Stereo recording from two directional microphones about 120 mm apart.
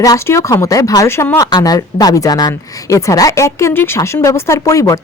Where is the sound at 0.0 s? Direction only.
25° left (ahead or behind).